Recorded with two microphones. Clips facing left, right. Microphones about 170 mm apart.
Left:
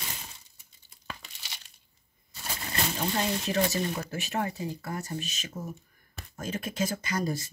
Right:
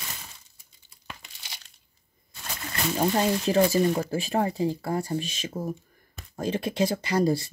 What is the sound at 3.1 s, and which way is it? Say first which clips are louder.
Speech: right 5 dB; 30° right (ahead or behind).